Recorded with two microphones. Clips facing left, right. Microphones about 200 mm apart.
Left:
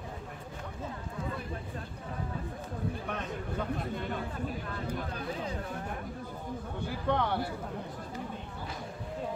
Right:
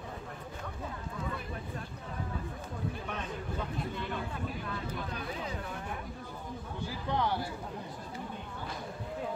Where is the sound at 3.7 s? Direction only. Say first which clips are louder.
Left 1 dB; 45° left (ahead or behind).